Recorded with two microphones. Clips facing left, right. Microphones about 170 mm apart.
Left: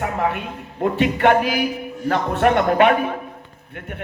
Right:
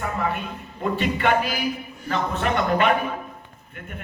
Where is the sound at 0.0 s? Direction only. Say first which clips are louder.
Left 4 dB; 70° left (ahead or behind).